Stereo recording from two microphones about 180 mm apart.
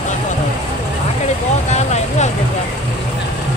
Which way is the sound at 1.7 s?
40° left (ahead or behind).